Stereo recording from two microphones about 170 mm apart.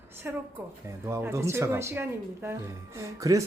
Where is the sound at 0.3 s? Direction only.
10° right (ahead or behind).